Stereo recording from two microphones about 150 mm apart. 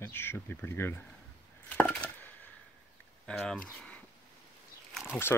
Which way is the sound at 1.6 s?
10° left (ahead or behind).